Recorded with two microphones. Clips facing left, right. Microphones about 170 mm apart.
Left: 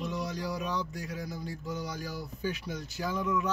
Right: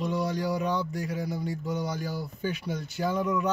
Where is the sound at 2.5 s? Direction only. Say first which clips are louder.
Right 4 dB; 60° right (ahead or behind).